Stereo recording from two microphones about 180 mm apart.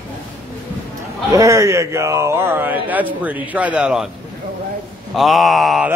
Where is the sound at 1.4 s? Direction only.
15° right (ahead or behind).